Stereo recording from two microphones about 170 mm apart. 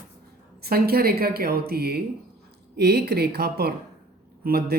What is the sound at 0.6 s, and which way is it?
A man's voice, 65° right (ahead or behind).